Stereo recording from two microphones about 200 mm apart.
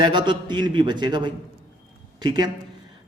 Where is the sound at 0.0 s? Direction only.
25° right (ahead or behind).